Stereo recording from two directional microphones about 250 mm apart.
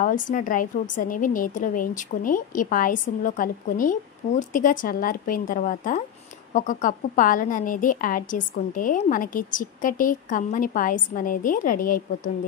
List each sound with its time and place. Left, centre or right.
0.0 s a woman's voice: left